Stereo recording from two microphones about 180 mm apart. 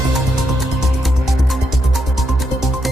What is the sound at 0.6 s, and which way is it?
Music, centre (ahead or behind).